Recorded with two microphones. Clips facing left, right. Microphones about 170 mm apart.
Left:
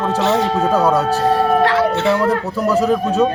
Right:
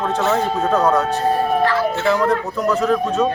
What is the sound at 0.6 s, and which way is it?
Speech, 10° left (ahead or behind).